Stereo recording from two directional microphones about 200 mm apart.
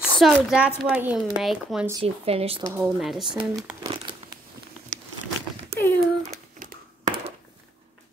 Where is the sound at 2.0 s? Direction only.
30° right (ahead or behind).